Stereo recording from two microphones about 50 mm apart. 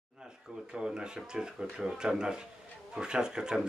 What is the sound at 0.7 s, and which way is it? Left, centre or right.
Speech, centre.